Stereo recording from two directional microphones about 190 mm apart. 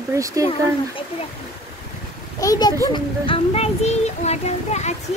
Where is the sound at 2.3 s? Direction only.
20° left (ahead or behind).